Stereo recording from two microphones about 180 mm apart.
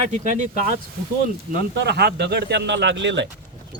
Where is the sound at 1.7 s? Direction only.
65° right (ahead or behind); by 3.2 s 85° right.